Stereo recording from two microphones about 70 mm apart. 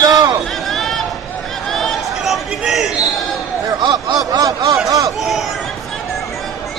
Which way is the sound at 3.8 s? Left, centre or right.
Right.